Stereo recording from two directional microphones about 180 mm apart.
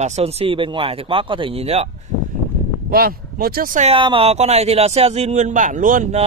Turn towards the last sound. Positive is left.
turn(degrees=-45)  # may be behind; listen again after turning